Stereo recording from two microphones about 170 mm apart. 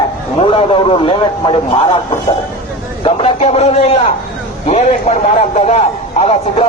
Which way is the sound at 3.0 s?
40° left (ahead or behind).